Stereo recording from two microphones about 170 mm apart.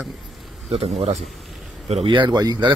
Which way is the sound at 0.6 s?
40° right (ahead or behind).